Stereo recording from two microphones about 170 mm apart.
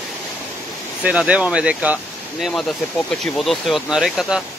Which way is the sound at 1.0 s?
5° right (ahead or behind).